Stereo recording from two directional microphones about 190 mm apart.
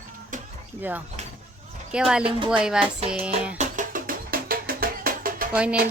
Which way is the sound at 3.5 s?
40° right (ahead or behind).